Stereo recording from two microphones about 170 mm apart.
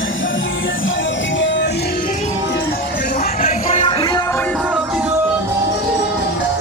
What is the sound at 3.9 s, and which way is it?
Music, 25° left (ahead or behind).